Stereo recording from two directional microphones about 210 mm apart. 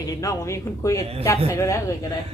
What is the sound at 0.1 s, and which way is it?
Speech, 15° left (ahead or behind).